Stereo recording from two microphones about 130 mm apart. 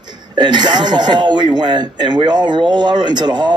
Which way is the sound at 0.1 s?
35° right (ahead or behind).